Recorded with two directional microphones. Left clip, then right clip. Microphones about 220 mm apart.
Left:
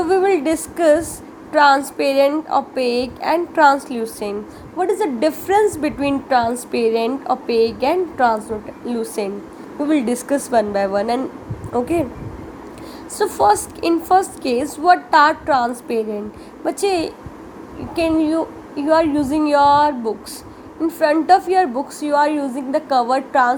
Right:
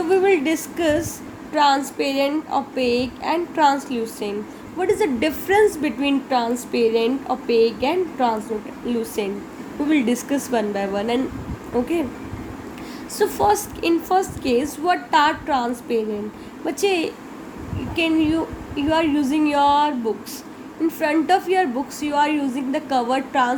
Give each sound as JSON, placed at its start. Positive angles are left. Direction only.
{"t": 0.1, "sound": "a woman's voice", "side_deg": 20}
{"t": 13.1, "sound": "a woman's voice", "side_deg": 15}